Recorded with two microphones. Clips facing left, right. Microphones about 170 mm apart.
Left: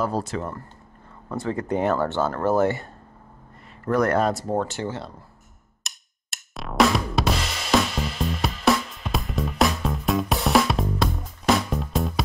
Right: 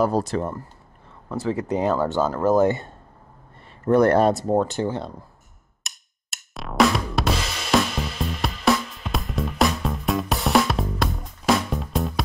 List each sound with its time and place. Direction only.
0.0 s speech: 40° right (ahead or behind)
1.3 s speech: 5° right (ahead or behind)
3.8 s speech: 30° right (ahead or behind)
5.9 s drum: centre (ahead or behind)